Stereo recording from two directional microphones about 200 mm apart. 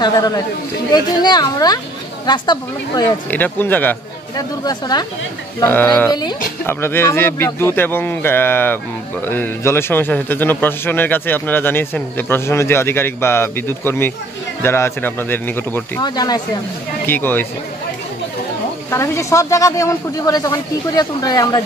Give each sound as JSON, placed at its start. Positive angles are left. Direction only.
{"t": 0.0, "sound": "speech", "side_deg": 20}
{"t": 3.3, "sound": "a man's voice", "side_deg": 10}
{"t": 16.0, "sound": "a man's voice", "side_deg": 20}
{"t": 18.9, "sound": "a man's voice", "side_deg": 15}